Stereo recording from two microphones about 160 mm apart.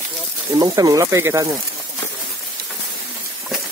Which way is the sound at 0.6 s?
20° right (ahead or behind).